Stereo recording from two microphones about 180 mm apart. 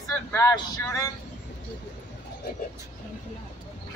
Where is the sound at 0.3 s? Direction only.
15° left (ahead or behind).